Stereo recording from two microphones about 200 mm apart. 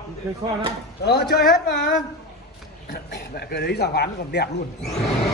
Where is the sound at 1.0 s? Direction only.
50° left (ahead or behind).